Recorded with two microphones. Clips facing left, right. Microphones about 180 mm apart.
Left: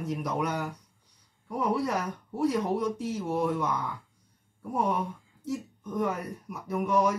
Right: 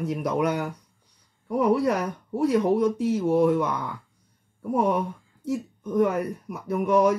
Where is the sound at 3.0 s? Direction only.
60° right (ahead or behind).